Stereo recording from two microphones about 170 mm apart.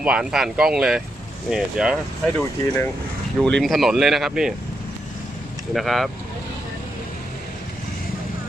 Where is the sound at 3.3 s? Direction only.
5° left (ahead or behind).